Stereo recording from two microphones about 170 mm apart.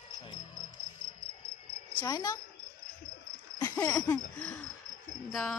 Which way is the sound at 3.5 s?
20° left (ahead or behind).